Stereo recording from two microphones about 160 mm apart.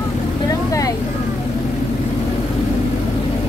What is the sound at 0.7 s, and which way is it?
Speech, 20° left (ahead or behind).